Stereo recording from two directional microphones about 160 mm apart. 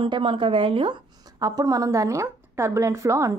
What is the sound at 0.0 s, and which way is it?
Speech, 30° right (ahead or behind).